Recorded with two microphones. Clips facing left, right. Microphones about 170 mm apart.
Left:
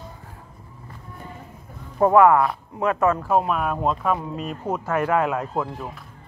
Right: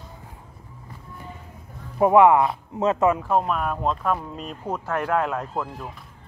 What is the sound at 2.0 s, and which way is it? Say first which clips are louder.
Speech: even; 15° right (ahead or behind).